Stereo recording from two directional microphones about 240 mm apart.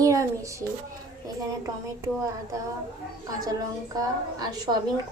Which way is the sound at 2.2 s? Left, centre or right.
Centre.